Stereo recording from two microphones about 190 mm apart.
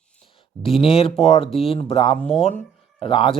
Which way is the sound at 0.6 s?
30° left (ahead or behind).